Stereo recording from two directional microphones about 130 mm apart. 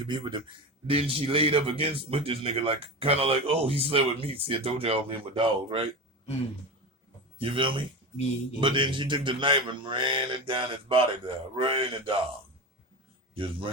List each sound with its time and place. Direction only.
0.0 s a man's voice: 40° right (ahead or behind)
7.3 s speech: 40° right (ahead or behind)
13.3 s a man's voice: 45° right (ahead or behind)